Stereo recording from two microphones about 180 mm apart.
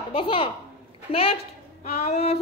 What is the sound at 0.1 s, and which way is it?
A child's voice, 30° left (ahead or behind).